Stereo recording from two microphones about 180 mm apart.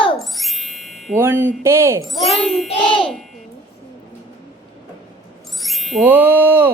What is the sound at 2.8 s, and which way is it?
Speech, 30° left (ahead or behind).